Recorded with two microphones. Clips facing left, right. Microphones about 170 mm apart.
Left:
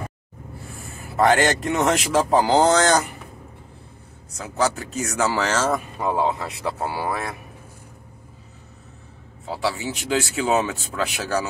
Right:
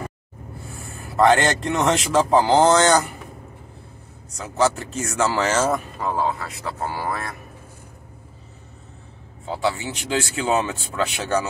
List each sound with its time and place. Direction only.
0.7 s a man's voice: centre (ahead or behind)
4.3 s speech: centre (ahead or behind)
5.9 s a man's voice: 15° left (ahead or behind)
9.5 s speech: centre (ahead or behind)